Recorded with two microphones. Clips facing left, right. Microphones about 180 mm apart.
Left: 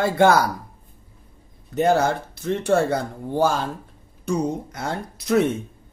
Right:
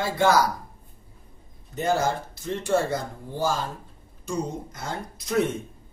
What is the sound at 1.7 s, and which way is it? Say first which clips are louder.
Speech: left 5 dB; 65° left (ahead or behind).